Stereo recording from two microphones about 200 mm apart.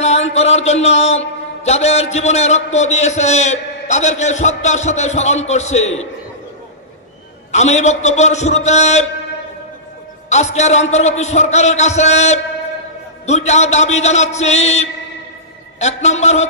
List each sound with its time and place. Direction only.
0.0 s a man's voice: 35° left (ahead or behind)
7.5 s a man's voice: 35° left (ahead or behind)
10.3 s a man's voice: 35° left (ahead or behind)